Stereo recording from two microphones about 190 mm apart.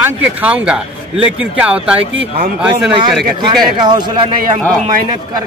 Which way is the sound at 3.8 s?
25° right (ahead or behind).